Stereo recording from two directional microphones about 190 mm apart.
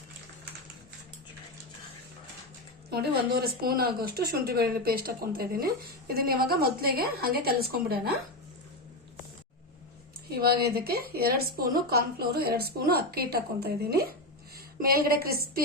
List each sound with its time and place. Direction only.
2.9 s speech: 55° right (ahead or behind)
10.2 s speech: 55° right (ahead or behind)